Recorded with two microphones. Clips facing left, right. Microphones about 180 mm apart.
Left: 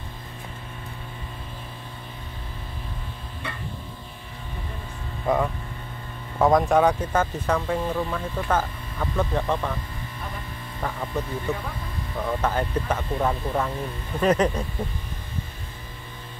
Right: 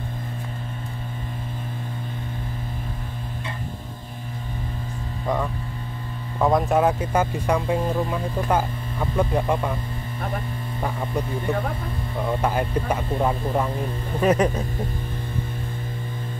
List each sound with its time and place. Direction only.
6.4 s speech: centre (ahead or behind)
10.8 s speech: 15° right (ahead or behind)
12.3 s speech: 10° right (ahead or behind)